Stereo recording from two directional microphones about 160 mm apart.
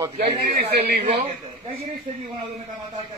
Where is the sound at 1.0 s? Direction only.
40° right (ahead or behind).